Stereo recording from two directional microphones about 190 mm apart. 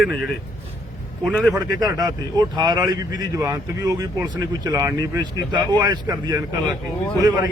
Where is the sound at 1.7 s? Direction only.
20° right (ahead or behind).